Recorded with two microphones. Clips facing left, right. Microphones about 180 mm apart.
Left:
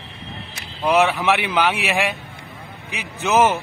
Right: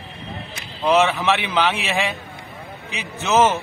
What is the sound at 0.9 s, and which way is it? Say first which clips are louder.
A man's voice: even; 15° left (ahead or behind).